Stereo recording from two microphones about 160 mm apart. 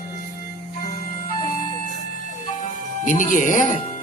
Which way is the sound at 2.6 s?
55° left (ahead or behind).